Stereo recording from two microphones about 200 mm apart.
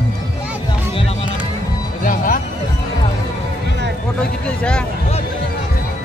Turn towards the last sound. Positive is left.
turn(degrees=5)  # may be behind; listen again after turning